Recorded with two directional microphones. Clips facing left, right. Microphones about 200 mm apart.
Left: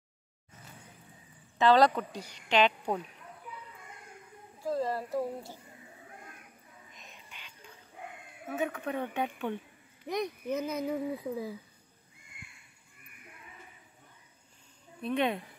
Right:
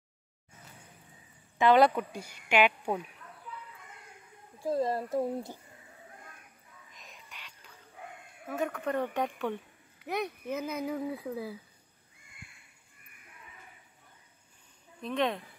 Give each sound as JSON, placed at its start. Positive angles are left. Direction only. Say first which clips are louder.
{"t": 1.6, "sound": "speech", "louder": "right 1 dB", "side_deg": -15}
{"t": 3.5, "sound": "a sound", "louder": "right 2 dB", "side_deg": 15}
{"t": 4.6, "sound": "speech", "louder": "right 2 dB", "side_deg": -20}
{"t": 6.9, "sound": "a sound", "louder": "right 2 dB", "side_deg": 0}
{"t": 8.5, "sound": "speech", "louder": "right 2 dB", "side_deg": 5}
{"t": 15.0, "sound": "speech", "louder": "left 1 dB", "side_deg": 5}